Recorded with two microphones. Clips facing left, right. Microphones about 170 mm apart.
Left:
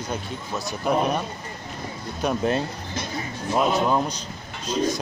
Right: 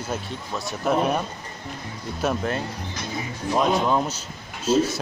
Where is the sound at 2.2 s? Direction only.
5° right (ahead or behind).